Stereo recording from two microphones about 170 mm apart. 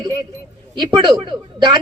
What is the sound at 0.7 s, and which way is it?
A woman's voice, 25° right (ahead or behind).